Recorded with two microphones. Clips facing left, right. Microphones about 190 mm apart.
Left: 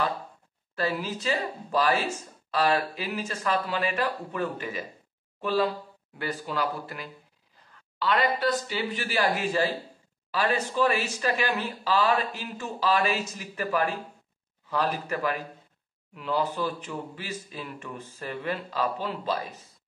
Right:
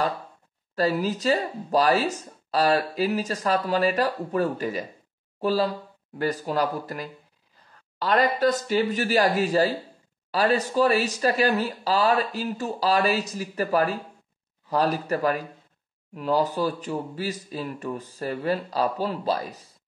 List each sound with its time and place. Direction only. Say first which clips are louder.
0.7 s speech: right 6 dB; 40° right (ahead or behind)